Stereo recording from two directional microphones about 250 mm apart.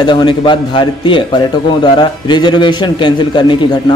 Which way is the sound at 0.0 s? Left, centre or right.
Centre.